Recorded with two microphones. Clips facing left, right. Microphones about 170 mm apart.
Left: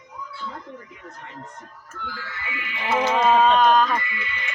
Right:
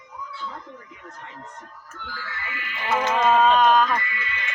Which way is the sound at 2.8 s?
5° left (ahead or behind).